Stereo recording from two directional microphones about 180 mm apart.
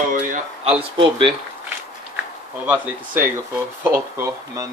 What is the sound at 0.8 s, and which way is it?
Speech, 30° right (ahead or behind).